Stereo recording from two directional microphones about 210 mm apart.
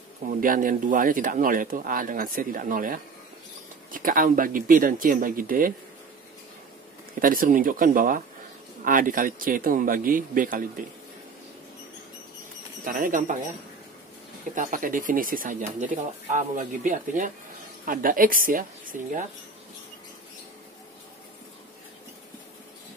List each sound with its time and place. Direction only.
0.3 s speech: 40° right (ahead or behind)
7.2 s speech: 40° right (ahead or behind)
12.8 s speech: 40° right (ahead or behind)
14.5 s speech: 40° right (ahead or behind)